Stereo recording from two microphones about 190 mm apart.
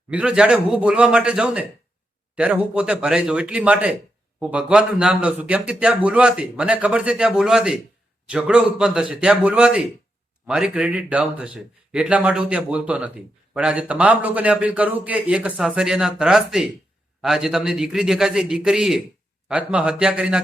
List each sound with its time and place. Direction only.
0.1 s a man's voice: 5° right (ahead or behind)